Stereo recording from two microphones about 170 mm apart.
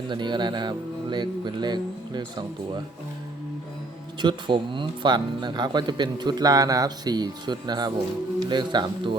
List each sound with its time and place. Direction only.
0.1 s speech: 25° right (ahead or behind)
4.2 s speech: 25° right (ahead or behind)